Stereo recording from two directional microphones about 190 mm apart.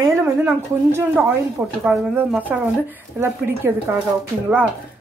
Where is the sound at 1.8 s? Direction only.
5° right (ahead or behind).